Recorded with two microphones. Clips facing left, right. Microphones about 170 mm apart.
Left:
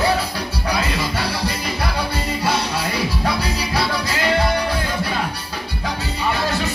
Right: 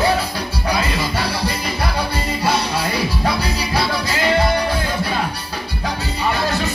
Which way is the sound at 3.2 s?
30° right (ahead or behind).